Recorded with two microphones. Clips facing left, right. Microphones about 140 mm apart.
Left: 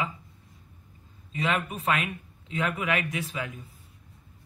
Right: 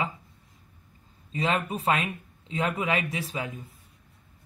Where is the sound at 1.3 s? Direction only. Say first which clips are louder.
Right 1 dB; 30° right (ahead or behind).